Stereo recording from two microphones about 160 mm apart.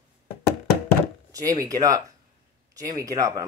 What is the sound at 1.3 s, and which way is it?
Speech, 20° right (ahead or behind).